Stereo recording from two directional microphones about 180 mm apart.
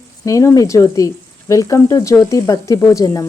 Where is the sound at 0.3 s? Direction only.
15° left (ahead or behind).